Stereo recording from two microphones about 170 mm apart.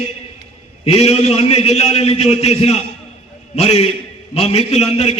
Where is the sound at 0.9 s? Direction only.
35° left (ahead or behind).